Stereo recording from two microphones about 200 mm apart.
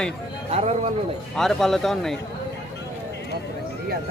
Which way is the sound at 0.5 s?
30° right (ahead or behind).